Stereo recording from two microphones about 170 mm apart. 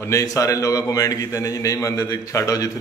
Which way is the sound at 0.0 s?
20° left (ahead or behind).